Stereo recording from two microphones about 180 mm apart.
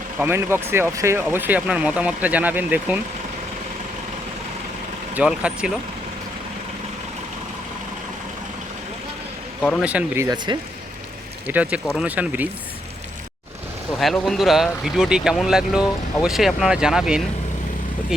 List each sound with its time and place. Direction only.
0.2 s speech: 15° right (ahead or behind)
5.1 s speech: 5° right (ahead or behind)
9.6 s speech: 10° left (ahead or behind)
9.8 s speech: 5° right (ahead or behind)
10.2 s speech: 25° right (ahead or behind)
11.4 s speech: 10° right (ahead or behind)
14.0 s speech: centre (ahead or behind)